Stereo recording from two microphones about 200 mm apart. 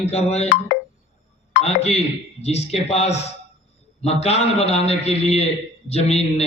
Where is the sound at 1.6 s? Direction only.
30° left (ahead or behind).